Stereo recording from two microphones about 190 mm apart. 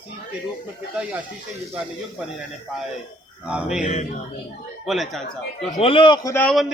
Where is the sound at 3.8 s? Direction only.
40° left (ahead or behind).